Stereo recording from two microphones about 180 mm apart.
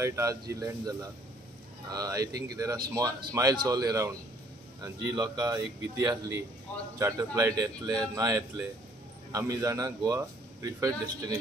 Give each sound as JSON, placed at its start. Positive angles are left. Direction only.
{"t": 0.0, "sound": "a man's voice", "side_deg": -15}